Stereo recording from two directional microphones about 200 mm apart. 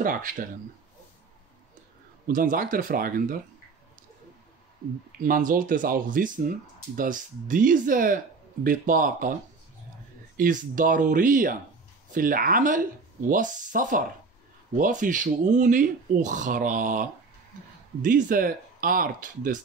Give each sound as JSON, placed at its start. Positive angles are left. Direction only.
{"t": 0.0, "sound": "speech", "side_deg": -45}
{"t": 2.2, "sound": "speech", "side_deg": -45}
{"t": 5.2, "sound": "speech", "side_deg": -45}
{"t": 10.3, "sound": "speech", "side_deg": -45}